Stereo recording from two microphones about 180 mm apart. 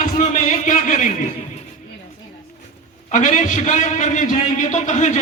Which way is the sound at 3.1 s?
45° left (ahead or behind).